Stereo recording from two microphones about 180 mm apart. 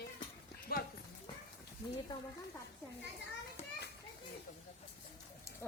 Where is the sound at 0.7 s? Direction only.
55° left (ahead or behind).